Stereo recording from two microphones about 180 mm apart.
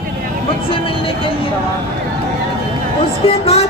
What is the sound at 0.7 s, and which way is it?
Vehicle, 30° left (ahead or behind).